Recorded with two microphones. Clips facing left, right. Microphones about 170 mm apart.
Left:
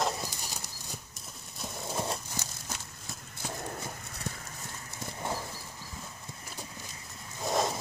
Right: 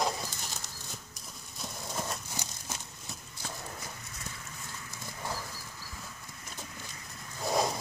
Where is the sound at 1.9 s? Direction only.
30° left (ahead or behind).